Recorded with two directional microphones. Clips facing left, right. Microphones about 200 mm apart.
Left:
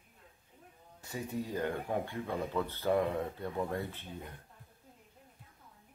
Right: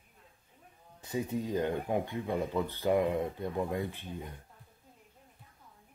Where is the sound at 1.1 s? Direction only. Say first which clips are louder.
Right 5 dB; 20° right (ahead or behind).